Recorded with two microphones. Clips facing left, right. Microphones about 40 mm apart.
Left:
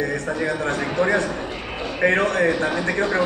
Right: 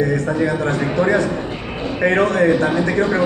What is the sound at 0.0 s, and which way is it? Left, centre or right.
A man's voice, right.